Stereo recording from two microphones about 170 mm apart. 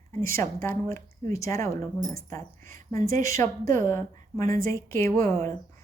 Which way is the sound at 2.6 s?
50° right (ahead or behind).